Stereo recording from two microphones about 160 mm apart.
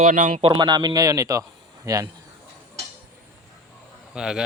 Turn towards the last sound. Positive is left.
turn(degrees=-5)  # may be behind; listen again after turning